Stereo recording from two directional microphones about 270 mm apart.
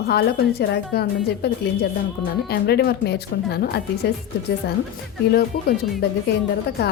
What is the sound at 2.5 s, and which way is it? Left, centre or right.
A woman's voice, left.